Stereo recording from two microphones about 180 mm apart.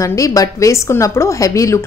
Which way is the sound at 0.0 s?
20° left (ahead or behind).